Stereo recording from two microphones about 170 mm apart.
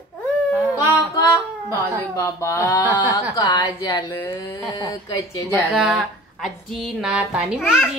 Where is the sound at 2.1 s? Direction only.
15° left (ahead or behind).